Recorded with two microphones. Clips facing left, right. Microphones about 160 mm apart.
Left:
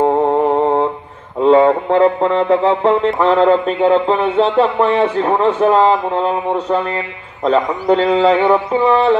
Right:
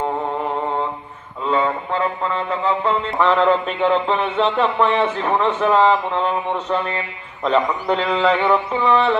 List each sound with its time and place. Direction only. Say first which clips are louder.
0.2 s mantra: left 10 dB; 40° left (ahead or behind)
1.5 s a sound: left 10 dB; 65° left (ahead or behind)
3.2 s a man's voice: left 4 dB; 40° left (ahead or behind)